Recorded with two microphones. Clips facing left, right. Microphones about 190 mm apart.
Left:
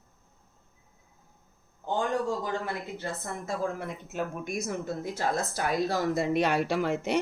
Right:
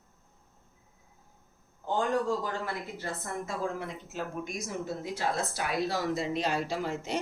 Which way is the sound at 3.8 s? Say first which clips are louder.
Left 3 dB; 55° left (ahead or behind).